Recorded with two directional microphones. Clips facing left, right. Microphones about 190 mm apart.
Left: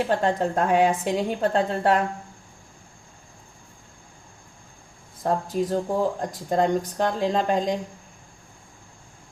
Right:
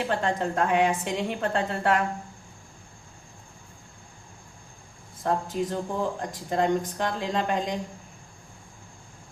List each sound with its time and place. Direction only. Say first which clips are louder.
0.1 s a woman's voice: left 4 dB; 35° left (ahead or behind)
5.2 s a woman's voice: left 3 dB; 40° left (ahead or behind)